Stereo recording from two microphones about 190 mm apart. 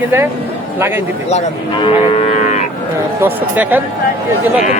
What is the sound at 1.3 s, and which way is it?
Speech, 30° left (ahead or behind).